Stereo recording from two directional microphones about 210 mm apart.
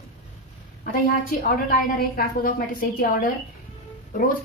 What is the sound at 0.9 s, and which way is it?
Speech, 45° left (ahead or behind).